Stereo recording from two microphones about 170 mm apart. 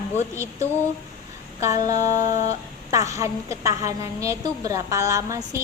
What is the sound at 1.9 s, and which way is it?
A woman's voice, 20° right (ahead or behind).